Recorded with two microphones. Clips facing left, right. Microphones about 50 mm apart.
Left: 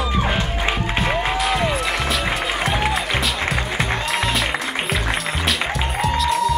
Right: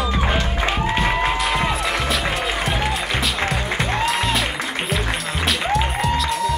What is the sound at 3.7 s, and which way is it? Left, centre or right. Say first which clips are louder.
Music: right 1 dB; centre.